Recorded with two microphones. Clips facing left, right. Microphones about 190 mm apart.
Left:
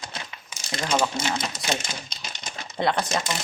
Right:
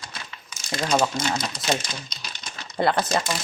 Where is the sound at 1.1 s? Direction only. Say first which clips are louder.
Right 1 dB; 25° left (ahead or behind).